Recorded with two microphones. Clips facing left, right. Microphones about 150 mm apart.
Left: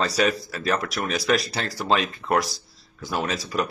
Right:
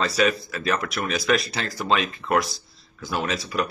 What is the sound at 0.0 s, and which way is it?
Speech, 35° left (ahead or behind).